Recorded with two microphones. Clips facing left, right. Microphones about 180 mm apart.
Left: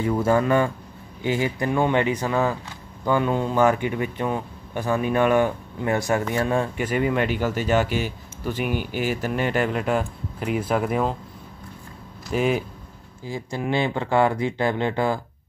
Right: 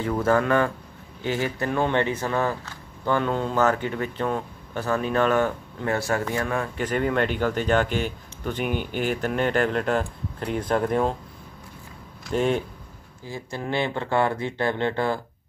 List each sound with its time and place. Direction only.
0.0 s speech: 10° left (ahead or behind)
6.8 s speech: 10° left (ahead or behind)
12.3 s speech: 5° left (ahead or behind)
13.2 s speech: 15° left (ahead or behind)